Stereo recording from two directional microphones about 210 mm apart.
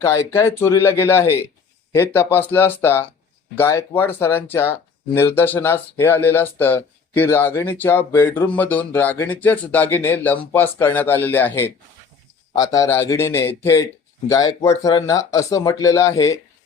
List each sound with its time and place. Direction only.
0.0 s speech: 15° left (ahead or behind)